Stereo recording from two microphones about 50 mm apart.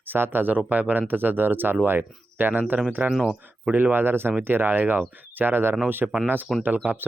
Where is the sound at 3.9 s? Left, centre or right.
Right.